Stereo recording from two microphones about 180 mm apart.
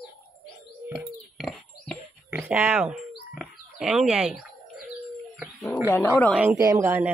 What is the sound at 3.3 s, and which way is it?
Bird, 5° right (ahead or behind).